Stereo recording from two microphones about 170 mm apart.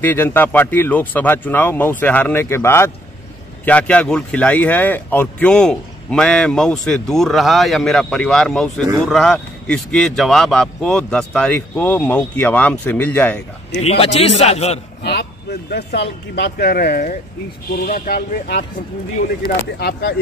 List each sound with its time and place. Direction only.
0.0 s speech: 10° left (ahead or behind)
13.7 s a man's voice: 40° left (ahead or behind)
15.7 s speech: 80° left